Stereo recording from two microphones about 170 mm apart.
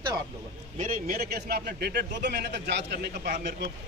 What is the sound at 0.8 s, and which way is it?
A man's voice, 50° right (ahead or behind).